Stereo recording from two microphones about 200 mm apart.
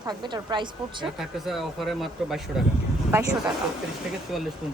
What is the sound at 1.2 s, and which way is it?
Speech, centre (ahead or behind).